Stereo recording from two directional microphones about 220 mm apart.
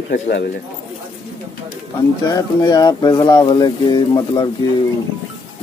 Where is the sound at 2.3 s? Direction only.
20° left (ahead or behind).